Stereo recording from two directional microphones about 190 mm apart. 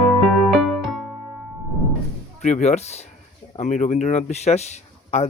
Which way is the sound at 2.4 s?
35° left (ahead or behind).